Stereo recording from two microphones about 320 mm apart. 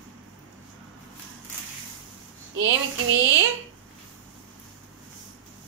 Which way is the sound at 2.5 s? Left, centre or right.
Right.